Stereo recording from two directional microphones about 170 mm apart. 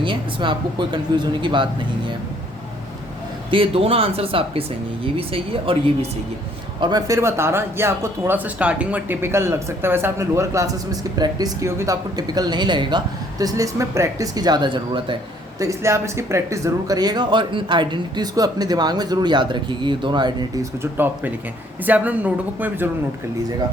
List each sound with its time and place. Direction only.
0.0 s speech: 30° right (ahead or behind)
3.5 s speech: 35° right (ahead or behind)
15.5 s speech: 15° right (ahead or behind)
21.8 s speech: 10° right (ahead or behind)